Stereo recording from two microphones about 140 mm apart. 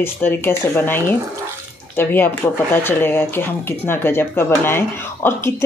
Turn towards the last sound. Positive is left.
turn(degrees=20)  # may be behind; listen again after turning